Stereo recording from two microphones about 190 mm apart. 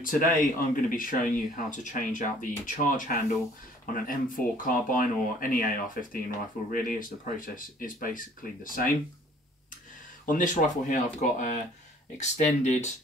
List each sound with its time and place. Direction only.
0.0 s speech: 45° left (ahead or behind)
10.2 s speech: 45° left (ahead or behind)